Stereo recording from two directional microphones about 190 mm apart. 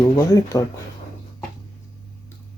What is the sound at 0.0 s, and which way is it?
Speech, 15° left (ahead or behind).